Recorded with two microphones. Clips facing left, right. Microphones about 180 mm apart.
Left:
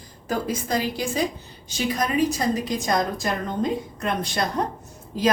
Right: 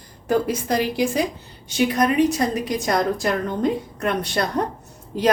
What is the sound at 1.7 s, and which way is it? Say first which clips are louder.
Speech: right 6 dB; 60° right (ahead or behind).